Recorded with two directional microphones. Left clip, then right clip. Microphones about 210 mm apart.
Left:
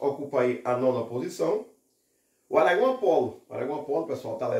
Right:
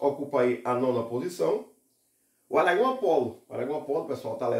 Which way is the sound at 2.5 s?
20° right (ahead or behind).